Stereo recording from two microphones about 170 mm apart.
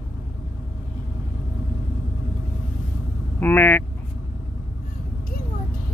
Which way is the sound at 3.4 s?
10° left (ahead or behind).